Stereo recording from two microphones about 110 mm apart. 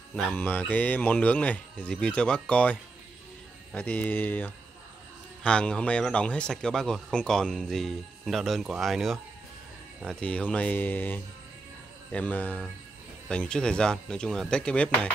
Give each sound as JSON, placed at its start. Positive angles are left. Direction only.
{"t": 0.1, "sound": "speech", "side_deg": 15}
{"t": 10.0, "sound": "speech", "side_deg": 10}